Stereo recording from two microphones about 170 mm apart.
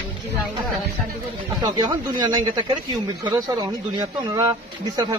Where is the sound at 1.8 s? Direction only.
25° right (ahead or behind).